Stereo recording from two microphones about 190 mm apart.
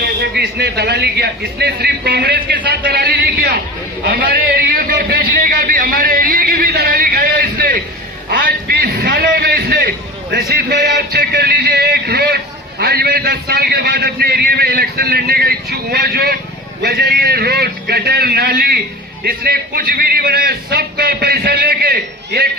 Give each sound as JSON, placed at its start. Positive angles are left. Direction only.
{"t": 0.0, "sound": "a man's voice", "side_deg": -60}
{"t": 8.3, "sound": "a sound", "side_deg": -50}
{"t": 11.0, "sound": "a man's voice", "side_deg": -55}